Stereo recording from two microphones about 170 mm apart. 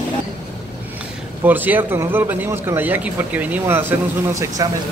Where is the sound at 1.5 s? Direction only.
10° right (ahead or behind).